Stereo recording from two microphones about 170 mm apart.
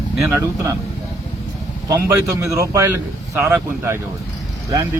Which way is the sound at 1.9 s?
20° right (ahead or behind).